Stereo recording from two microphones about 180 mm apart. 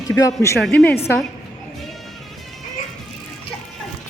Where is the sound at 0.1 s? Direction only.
20° left (ahead or behind).